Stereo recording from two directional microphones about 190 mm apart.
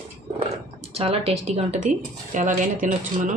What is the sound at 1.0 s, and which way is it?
Speech, 30° right (ahead or behind).